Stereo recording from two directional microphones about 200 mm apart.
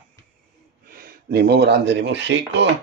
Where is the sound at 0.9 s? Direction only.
50° right (ahead or behind).